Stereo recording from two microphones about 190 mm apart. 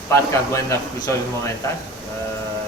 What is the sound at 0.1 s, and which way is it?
A man's voice, 15° left (ahead or behind).